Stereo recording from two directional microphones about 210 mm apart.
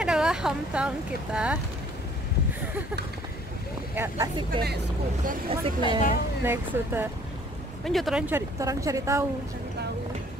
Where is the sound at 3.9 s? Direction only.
20° right (ahead or behind).